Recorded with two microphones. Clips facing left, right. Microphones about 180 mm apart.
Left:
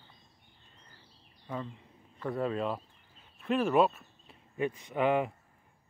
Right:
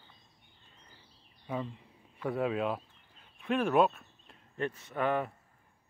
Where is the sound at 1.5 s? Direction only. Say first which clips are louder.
Right 2 dB; 10° right (ahead or behind).